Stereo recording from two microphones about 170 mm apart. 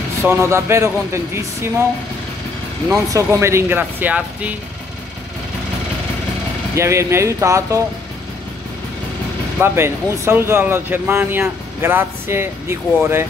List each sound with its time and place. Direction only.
0.2 s speech: 15° right (ahead or behind)
2.9 s speech: 20° right (ahead or behind)
6.7 s speech: 15° right (ahead or behind)
9.6 s speech: 15° right (ahead or behind)